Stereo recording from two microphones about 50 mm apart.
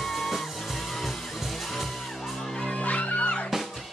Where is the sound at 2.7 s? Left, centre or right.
Left.